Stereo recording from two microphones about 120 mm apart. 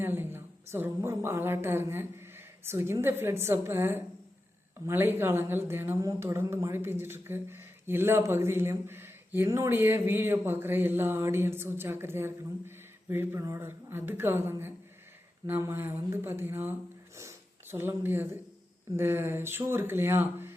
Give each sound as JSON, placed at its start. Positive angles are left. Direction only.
{"t": 0.0, "sound": "a woman's voice", "side_deg": -20}